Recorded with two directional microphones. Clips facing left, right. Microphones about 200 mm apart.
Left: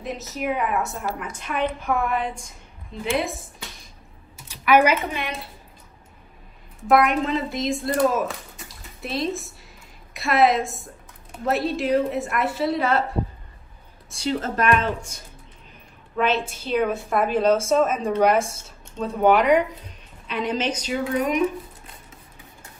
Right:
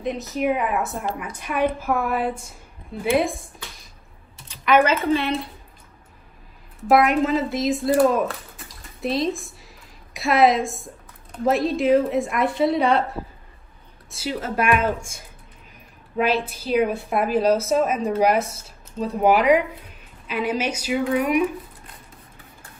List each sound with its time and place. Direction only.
0.0 s a woman's voice: centre (ahead or behind)
4.5 s a woman's voice: 10° left (ahead or behind)
6.8 s a woman's voice: centre (ahead or behind)
16.3 s a woman's voice: 25° left (ahead or behind)
17.1 s a woman's voice: 5° right (ahead or behind)
18.4 s a woman's voice: 25° left (ahead or behind)
19.2 s a woman's voice: 5° right (ahead or behind)